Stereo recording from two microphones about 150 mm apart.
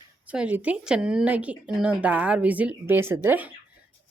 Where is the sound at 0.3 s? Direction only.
10° right (ahead or behind).